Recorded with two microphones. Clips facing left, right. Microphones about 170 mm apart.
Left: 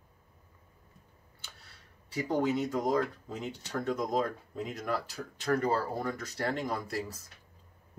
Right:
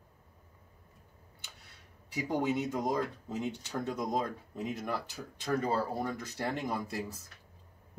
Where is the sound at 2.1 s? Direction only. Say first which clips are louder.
Left 2 dB; 20° right (ahead or behind).